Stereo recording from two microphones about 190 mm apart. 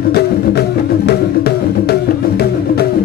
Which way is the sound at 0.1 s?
55° left (ahead or behind).